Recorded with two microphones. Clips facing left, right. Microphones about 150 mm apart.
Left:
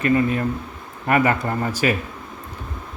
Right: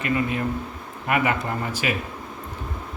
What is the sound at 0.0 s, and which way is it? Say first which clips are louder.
Speech: left 5 dB; 40° left (ahead or behind).